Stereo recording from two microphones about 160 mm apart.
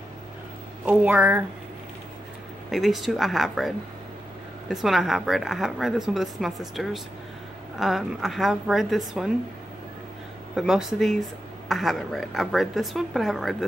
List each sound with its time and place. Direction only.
0.8 s speech: 10° right (ahead or behind)
2.7 s a woman's voice: centre (ahead or behind)
10.5 s a woman's voice: centre (ahead or behind)